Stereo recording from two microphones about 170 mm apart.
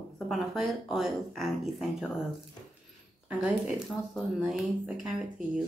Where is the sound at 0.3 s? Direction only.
Centre (ahead or behind).